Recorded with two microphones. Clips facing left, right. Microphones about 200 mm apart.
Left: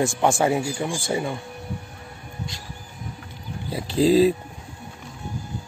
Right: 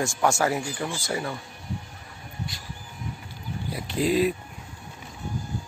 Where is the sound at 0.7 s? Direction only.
10° left (ahead or behind).